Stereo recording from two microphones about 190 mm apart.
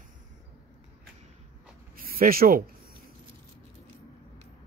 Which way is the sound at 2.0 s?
50° right (ahead or behind).